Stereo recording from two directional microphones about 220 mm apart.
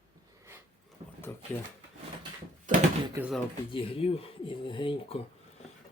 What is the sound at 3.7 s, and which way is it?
Dishes, 25° left (ahead or behind).